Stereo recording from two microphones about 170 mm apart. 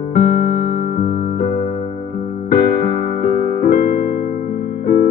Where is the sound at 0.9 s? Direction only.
55° left (ahead or behind).